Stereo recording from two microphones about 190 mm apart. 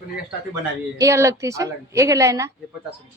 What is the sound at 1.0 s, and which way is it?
A woman's voice, 15° right (ahead or behind).